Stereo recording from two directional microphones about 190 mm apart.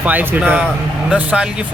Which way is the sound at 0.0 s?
10° right (ahead or behind).